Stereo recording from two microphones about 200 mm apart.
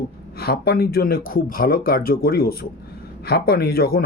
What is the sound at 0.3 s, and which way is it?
Speech, 50° left (ahead or behind).